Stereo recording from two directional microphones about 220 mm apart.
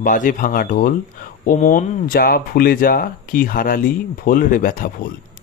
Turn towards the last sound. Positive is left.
turn(degrees=40)  # may be behind; listen again after turning